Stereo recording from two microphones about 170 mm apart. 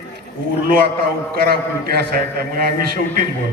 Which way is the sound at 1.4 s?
65° right (ahead or behind).